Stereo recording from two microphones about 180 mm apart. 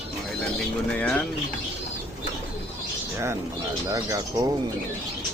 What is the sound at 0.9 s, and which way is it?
Speech, 5° left (ahead or behind).